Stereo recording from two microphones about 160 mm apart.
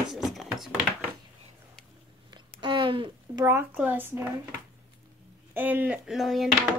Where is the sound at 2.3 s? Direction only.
30° right (ahead or behind).